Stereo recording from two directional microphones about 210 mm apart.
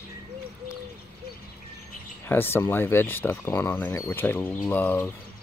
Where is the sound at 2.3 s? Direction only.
10° left (ahead or behind).